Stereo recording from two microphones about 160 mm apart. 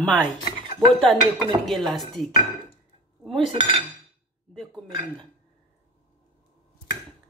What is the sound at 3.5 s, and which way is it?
Dishes, 30° right (ahead or behind).